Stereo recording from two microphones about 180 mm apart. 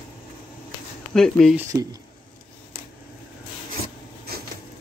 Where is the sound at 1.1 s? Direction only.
5° left (ahead or behind).